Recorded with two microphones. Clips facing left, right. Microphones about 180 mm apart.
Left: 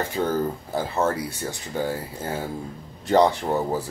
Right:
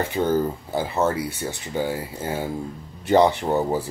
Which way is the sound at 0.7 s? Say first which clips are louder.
Right 2 dB; centre (ahead or behind).